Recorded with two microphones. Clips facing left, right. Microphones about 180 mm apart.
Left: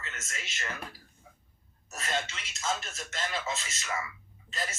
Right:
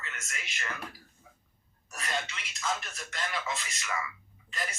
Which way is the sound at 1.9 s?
25° left (ahead or behind).